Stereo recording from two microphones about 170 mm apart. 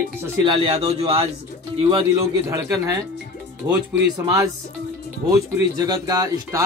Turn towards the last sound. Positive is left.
turn(degrees=-20)  # may be behind; listen again after turning